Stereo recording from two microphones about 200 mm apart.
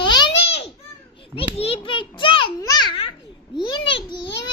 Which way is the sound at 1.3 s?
30° left (ahead or behind).